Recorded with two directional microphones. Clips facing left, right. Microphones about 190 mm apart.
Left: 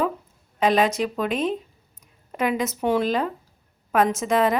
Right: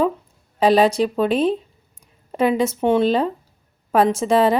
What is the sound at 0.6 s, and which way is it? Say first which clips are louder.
Speech: right 5 dB; 30° right (ahead or behind).